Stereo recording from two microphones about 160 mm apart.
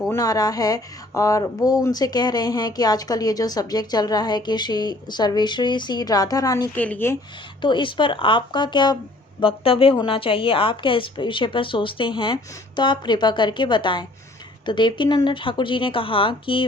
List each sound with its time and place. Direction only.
0.1 s speech: 20° left (ahead or behind)
6.7 s speech: 10° left (ahead or behind)
7.6 s a woman's voice: 30° left (ahead or behind)